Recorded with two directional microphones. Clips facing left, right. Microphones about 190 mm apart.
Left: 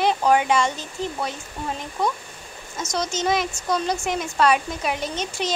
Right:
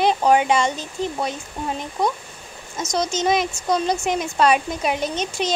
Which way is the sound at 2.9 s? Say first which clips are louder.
Right 3 dB; 20° right (ahead or behind).